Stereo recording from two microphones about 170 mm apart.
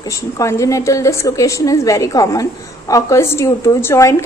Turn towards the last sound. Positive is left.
turn(degrees=15)  # may be behind; listen again after turning